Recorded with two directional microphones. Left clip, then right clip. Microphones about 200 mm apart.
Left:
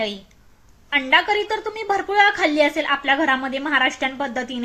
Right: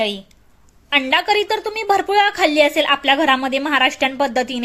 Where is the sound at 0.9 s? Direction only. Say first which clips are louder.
Right 2 dB; 50° right (ahead or behind).